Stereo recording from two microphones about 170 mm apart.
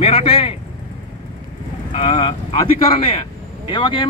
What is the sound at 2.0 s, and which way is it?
Speech, 30° left (ahead or behind).